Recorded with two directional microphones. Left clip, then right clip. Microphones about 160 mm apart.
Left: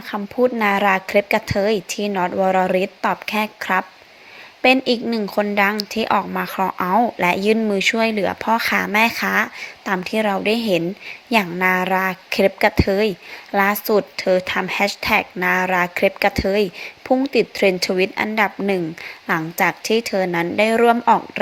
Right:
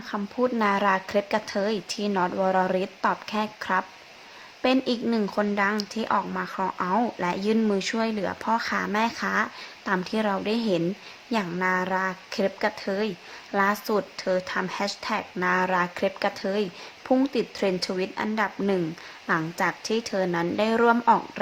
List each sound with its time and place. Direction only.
0.1 s a woman's voice: 15° left (ahead or behind)